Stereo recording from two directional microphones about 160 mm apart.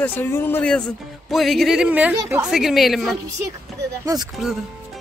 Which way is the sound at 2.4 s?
Centre (ahead or behind).